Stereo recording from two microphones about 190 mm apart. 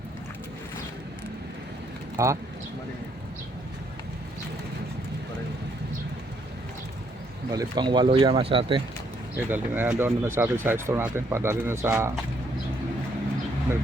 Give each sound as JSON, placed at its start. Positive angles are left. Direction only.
{"t": 2.1, "sound": "speech", "side_deg": -15}
{"t": 7.5, "sound": "speech", "side_deg": -20}
{"t": 9.3, "sound": "speech", "side_deg": -10}